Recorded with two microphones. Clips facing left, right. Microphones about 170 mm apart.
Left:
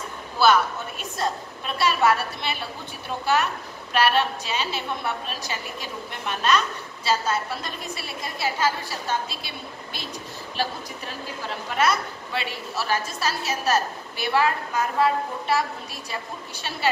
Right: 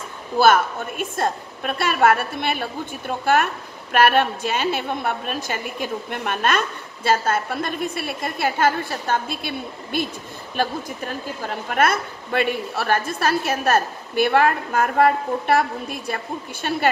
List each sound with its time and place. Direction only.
0.4 s a woman's voice: 50° right (ahead or behind)